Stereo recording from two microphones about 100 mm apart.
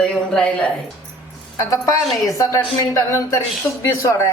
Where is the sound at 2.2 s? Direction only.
30° left (ahead or behind).